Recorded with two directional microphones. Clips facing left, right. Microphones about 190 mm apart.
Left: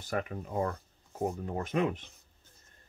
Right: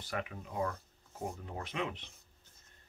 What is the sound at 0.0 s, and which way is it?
Speech, 45° left (ahead or behind).